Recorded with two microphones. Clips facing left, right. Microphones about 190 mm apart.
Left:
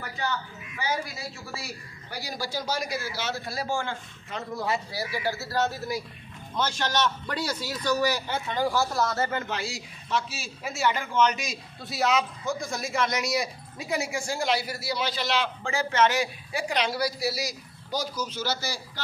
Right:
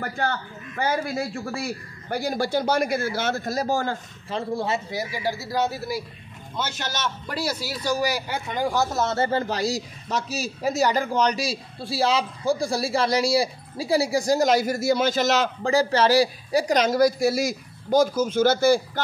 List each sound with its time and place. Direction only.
0.0 s a man's voice: 50° right (ahead or behind); by 6.0 s 10° right (ahead or behind)
7.3 s speech: 10° right (ahead or behind); by 18.8 s 50° right (ahead or behind)